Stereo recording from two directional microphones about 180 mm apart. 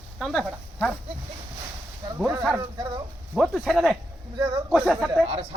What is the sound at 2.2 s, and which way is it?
Speech, 15° right (ahead or behind).